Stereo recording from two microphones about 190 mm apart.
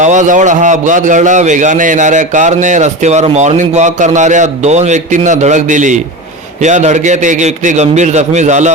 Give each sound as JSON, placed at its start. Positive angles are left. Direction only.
{"t": 0.0, "sound": "a man's voice", "side_deg": -40}